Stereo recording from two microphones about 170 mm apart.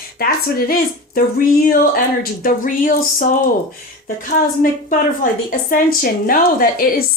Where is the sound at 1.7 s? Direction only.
60° left (ahead or behind).